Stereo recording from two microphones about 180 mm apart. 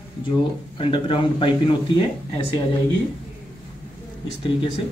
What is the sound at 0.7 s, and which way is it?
Speech, 30° left (ahead or behind).